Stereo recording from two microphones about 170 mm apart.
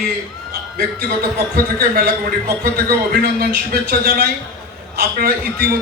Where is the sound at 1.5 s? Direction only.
65° right (ahead or behind).